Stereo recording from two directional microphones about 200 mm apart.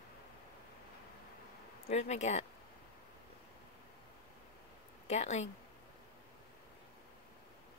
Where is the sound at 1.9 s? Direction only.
35° left (ahead or behind).